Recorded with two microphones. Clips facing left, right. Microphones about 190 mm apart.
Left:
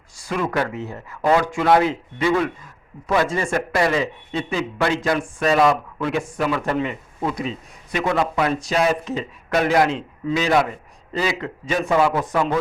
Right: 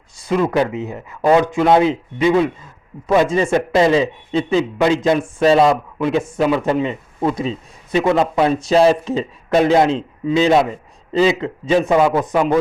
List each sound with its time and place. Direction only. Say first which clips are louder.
0.2 s a man's voice: right 6 dB; 20° right (ahead or behind)